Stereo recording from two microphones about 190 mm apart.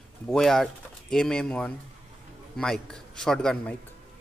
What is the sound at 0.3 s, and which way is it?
A man's voice, centre (ahead or behind).